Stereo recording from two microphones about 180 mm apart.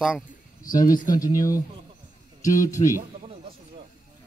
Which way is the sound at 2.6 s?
20° left (ahead or behind).